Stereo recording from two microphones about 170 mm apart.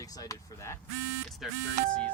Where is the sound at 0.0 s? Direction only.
20° left (ahead or behind).